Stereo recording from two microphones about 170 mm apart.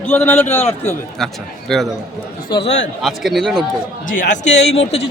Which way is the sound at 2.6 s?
90° left.